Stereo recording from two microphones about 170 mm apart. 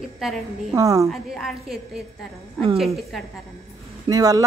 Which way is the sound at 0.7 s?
20° right (ahead or behind).